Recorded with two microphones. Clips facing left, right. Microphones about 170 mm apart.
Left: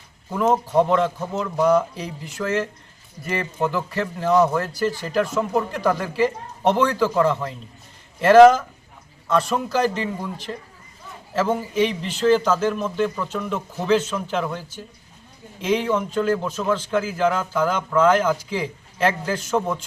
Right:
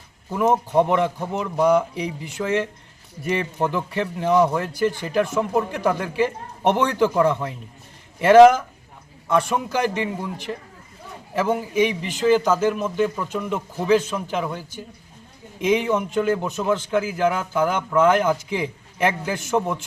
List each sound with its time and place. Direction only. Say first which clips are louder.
0.3 s a man's voice: even; 15° right (ahead or behind)